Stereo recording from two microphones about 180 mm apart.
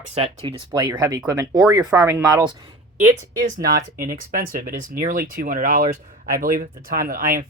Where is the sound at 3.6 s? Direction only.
55° right (ahead or behind).